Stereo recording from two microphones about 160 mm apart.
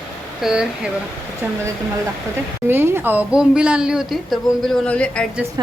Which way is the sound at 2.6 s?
15° right (ahead or behind).